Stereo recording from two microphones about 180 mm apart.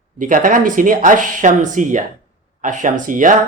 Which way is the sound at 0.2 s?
45° right (ahead or behind).